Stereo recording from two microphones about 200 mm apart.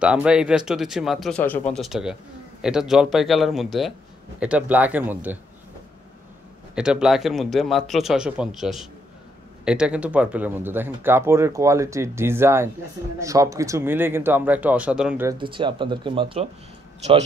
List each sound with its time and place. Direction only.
0.0 s speech: 5° right (ahead or behind)
6.7 s speech: 5° right (ahead or behind)
15.2 s speech: 25° right (ahead or behind)